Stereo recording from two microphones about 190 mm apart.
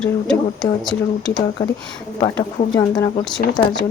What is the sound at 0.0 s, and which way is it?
Speech, 5° left (ahead or behind).